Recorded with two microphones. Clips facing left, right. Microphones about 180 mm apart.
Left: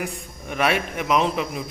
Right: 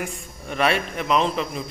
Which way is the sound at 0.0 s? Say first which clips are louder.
Left 1 dB; 10° left (ahead or behind).